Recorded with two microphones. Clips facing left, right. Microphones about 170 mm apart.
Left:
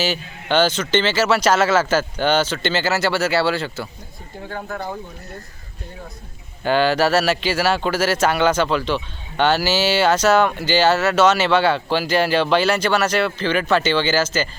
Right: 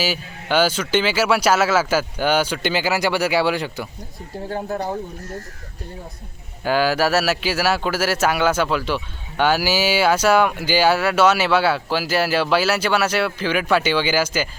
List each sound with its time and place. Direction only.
0.0 s speech: 10° right (ahead or behind)
4.4 s speech: 30° right (ahead or behind)
6.6 s speech: 5° right (ahead or behind)